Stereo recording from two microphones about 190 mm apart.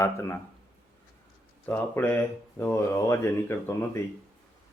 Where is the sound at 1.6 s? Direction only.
10° left (ahead or behind).